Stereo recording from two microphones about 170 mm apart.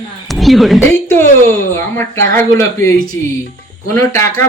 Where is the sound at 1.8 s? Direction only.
15° left (ahead or behind).